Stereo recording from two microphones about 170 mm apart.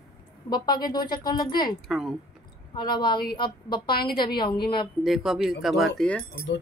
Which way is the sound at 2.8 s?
30° left (ahead or behind).